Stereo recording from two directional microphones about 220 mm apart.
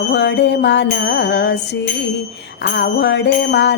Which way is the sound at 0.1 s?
50° left (ahead or behind).